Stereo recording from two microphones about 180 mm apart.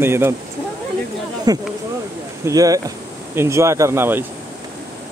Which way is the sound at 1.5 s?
20° right (ahead or behind).